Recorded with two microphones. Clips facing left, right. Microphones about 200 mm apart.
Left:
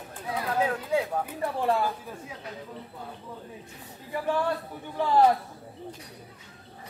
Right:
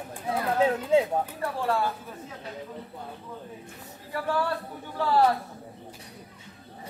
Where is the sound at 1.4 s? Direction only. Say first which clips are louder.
Left 5 dB; 20° left (ahead or behind).